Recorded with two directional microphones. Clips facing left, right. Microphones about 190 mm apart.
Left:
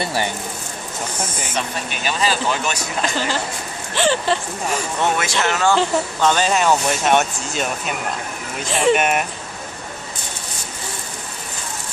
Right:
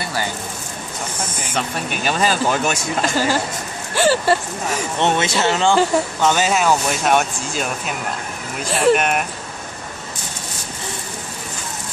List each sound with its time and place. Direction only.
0.0 s speech: 25° left (ahead or behind)
1.9 s speech: 45° right (ahead or behind)
3.9 s speech: 10° right (ahead or behind)
4.9 s speech: 20° right (ahead or behind); by 9.2 s centre (ahead or behind)